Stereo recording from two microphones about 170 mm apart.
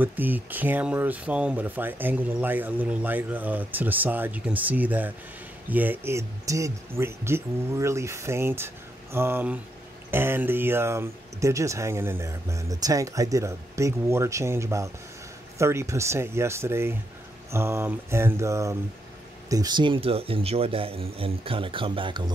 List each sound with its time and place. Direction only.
0.0 s speech: 10° right (ahead or behind); by 22.3 s 30° right (ahead or behind)